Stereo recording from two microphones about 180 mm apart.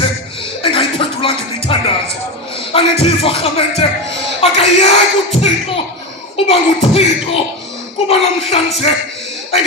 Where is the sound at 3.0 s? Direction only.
30° left (ahead or behind).